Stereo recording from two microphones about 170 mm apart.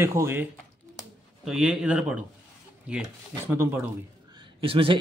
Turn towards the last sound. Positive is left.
turn(degrees=-30)  # may be behind; listen again after turning